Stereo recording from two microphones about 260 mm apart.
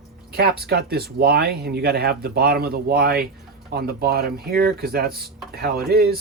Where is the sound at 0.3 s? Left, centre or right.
Right.